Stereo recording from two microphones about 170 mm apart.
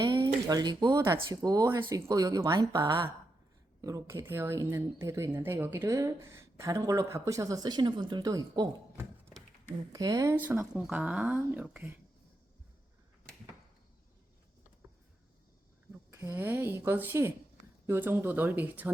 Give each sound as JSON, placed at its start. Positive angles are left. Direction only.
{"t": 0.0, "sound": "speech", "side_deg": -25}
{"t": 16.2, "sound": "speech", "side_deg": -15}